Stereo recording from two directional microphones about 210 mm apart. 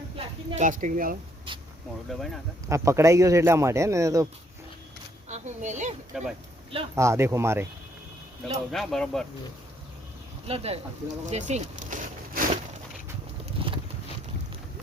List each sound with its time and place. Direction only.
0.5 s speech: 40° right (ahead or behind)
2.0 s speech: centre (ahead or behind)
2.6 s speech: 15° right (ahead or behind)
5.3 s speech: 35° right (ahead or behind)
6.1 s speech: centre (ahead or behind)
6.9 s speech: 15° right (ahead or behind)
8.7 s speech: centre (ahead or behind)
10.4 s speech: 30° right (ahead or behind)
11.3 s a sound: 35° right (ahead or behind)
13.4 s vehicle: 25° right (ahead or behind)